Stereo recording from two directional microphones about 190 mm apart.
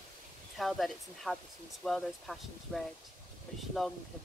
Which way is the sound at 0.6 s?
Centre (ahead or behind).